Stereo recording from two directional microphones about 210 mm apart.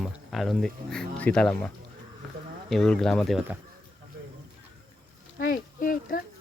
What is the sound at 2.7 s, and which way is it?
Speech, centre (ahead or behind).